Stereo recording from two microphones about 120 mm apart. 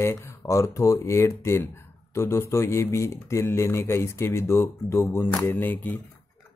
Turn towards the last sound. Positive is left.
turn(degrees=15)  # may be behind; listen again after turning